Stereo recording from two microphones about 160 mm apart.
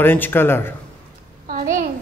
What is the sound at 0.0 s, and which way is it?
Speech, 15° left (ahead or behind).